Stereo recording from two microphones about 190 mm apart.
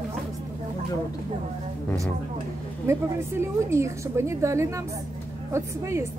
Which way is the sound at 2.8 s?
15° right (ahead or behind).